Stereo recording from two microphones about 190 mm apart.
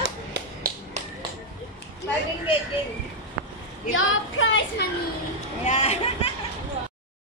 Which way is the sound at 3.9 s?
90° left.